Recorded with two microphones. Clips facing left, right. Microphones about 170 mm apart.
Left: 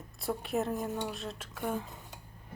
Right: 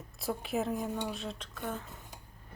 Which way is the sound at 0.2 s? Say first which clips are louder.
Left 1 dB; centre (ahead or behind).